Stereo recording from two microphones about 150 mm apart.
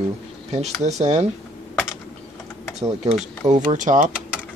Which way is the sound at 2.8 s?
50° right (ahead or behind).